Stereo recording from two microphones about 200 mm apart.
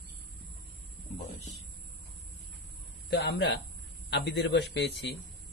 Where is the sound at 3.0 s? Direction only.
55° left (ahead or behind).